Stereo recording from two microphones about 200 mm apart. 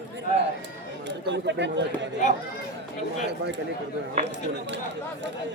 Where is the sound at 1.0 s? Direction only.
60° right (ahead or behind).